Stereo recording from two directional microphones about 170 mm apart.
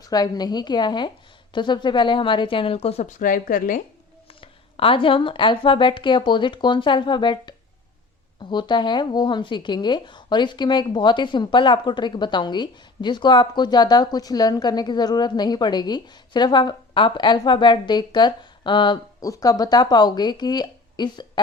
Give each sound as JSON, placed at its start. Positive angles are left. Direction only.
{"t": 0.0, "sound": "a woman's voice", "side_deg": 25}
{"t": 4.3, "sound": "speech", "side_deg": 30}